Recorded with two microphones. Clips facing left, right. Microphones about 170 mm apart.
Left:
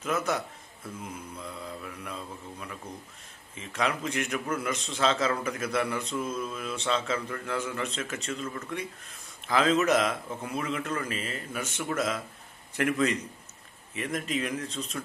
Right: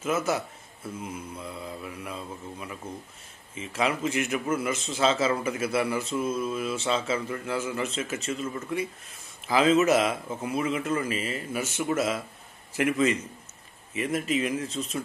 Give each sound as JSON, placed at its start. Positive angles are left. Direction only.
{"t": 0.0, "sound": "a man's voice", "side_deg": -5}